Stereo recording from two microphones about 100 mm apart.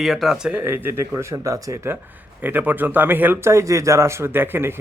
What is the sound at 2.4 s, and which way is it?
A man's voice, 15° right (ahead or behind).